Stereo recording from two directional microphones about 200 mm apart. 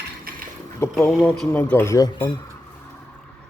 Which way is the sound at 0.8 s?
10° left (ahead or behind).